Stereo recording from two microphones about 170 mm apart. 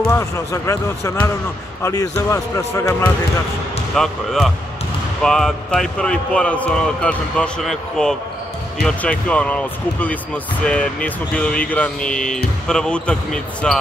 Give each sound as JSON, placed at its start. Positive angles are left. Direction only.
{"t": 0.1, "sound": "speech", "side_deg": 20}
{"t": 3.9, "sound": "speech", "side_deg": 0}